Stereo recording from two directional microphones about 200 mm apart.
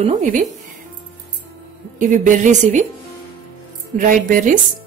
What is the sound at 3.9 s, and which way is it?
Speech, 40° right (ahead or behind).